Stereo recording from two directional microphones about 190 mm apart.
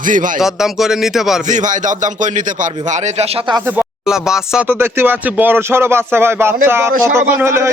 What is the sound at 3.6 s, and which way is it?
Speech, 10° right (ahead or behind).